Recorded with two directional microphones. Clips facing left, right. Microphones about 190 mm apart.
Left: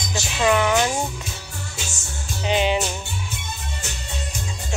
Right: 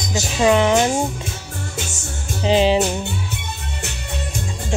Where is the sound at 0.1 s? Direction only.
20° right (ahead or behind).